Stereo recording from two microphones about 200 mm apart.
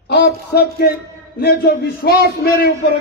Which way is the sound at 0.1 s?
55° left (ahead or behind).